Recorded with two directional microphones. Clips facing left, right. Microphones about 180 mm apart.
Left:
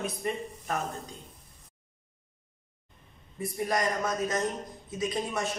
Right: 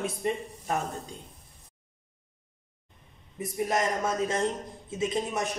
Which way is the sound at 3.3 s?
20° right (ahead or behind).